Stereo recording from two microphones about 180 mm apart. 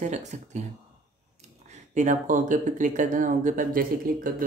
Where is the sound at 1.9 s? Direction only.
45° right (ahead or behind).